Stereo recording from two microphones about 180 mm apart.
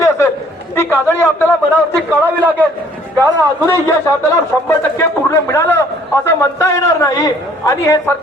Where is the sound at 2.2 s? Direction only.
10° right (ahead or behind).